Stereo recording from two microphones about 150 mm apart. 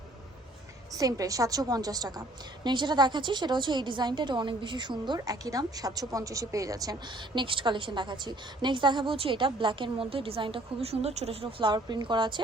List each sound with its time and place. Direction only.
0.9 s a woman's voice: 25° right (ahead or behind)